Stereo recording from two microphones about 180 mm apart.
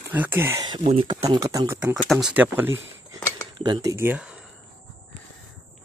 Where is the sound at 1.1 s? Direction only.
20° right (ahead or behind).